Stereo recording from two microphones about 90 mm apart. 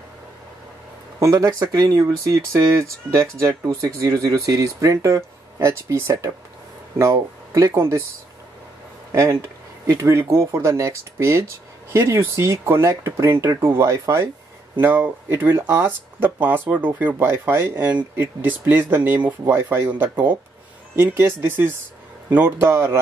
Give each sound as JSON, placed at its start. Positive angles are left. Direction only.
{"t": 1.5, "sound": "speech", "side_deg": -40}
{"t": 9.1, "sound": "speech", "side_deg": -30}